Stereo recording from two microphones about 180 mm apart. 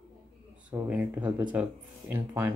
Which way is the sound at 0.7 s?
10° right (ahead or behind).